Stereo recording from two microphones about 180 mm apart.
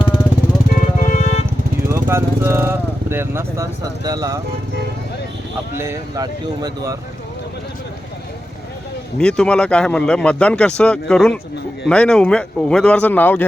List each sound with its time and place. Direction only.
0.7 s music: 40° left (ahead or behind)
1.9 s speech: 15° right (ahead or behind)
5.7 s speech: 15° right (ahead or behind)
9.1 s speech: 5° left (ahead or behind)